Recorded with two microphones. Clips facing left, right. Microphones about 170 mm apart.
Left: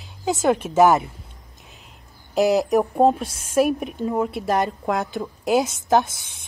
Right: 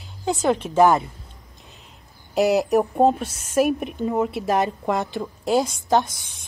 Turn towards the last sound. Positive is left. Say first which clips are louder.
# left 1 dB
turn(degrees=0)  # may be behind; listen again after turning